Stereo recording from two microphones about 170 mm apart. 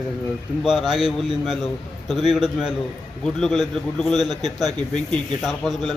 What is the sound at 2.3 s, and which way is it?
A man's voice, 5° right (ahead or behind).